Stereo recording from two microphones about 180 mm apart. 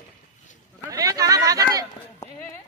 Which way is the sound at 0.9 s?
20° right (ahead or behind).